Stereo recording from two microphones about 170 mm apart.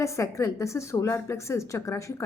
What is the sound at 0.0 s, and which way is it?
A woman's voice, 15° left (ahead or behind).